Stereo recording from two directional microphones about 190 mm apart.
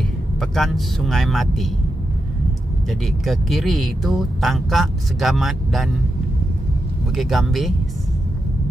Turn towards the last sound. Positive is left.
turn(degrees=0)  # may be behind; listen again after turning